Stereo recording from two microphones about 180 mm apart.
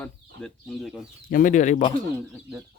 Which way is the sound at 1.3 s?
50° left (ahead or behind).